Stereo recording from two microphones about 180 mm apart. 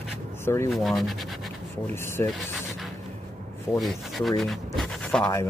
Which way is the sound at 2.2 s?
15° left (ahead or behind).